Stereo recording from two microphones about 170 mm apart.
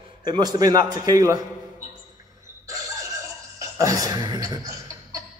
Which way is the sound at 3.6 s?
20° right (ahead or behind).